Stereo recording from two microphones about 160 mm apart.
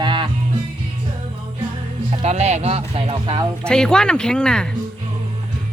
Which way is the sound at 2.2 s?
45° right (ahead or behind).